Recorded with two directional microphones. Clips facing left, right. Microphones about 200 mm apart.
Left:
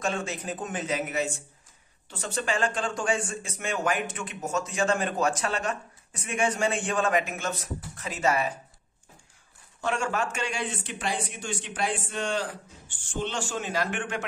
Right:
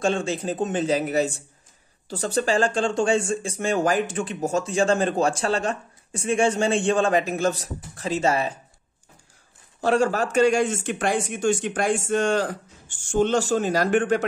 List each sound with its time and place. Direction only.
0.0 s speech: 30° right (ahead or behind)
9.8 s speech: 35° right (ahead or behind)